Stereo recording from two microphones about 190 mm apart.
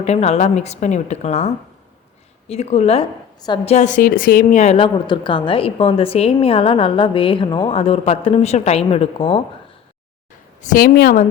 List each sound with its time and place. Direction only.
0.0 s speech: 35° left (ahead or behind)
3.8 s speech: 40° left (ahead or behind)
10.6 s a woman's voice: 45° left (ahead or behind)